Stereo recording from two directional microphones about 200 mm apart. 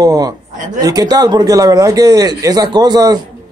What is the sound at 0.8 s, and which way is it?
Speech, 20° right (ahead or behind).